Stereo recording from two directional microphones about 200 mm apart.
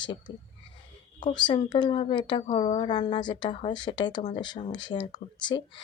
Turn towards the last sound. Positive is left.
turn(degrees=25)  # may be behind; listen again after turning